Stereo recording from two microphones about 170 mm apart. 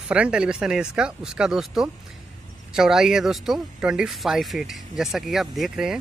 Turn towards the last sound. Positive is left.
turn(degrees=-5)  # may be behind; listen again after turning